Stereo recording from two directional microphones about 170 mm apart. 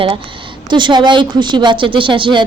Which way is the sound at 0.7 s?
25° right (ahead or behind).